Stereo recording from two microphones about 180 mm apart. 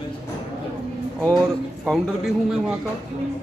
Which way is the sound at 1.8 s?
Centre (ahead or behind).